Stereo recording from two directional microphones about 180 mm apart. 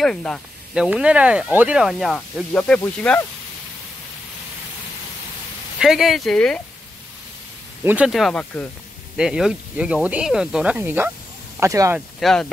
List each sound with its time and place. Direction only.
0.0 s speech: 5° left (ahead or behind)
5.8 s speech: centre (ahead or behind)
7.8 s speech: 5° right (ahead or behind)
12.2 s speech: centre (ahead or behind)